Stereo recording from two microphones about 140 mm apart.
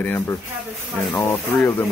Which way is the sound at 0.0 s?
15° left (ahead or behind).